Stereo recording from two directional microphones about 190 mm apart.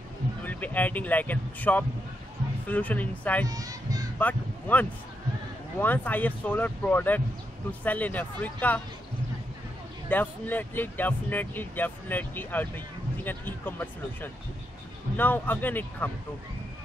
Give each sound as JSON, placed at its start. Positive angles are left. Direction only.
{"t": 0.4, "sound": "speech", "side_deg": 10}
{"t": 3.4, "sound": "a child's voice", "side_deg": -20}
{"t": 4.2, "sound": "speech", "side_deg": 10}
{"t": 10.0, "sound": "speech", "side_deg": 10}